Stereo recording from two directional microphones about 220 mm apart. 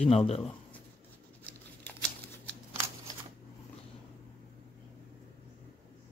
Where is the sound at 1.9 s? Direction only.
10° left (ahead or behind).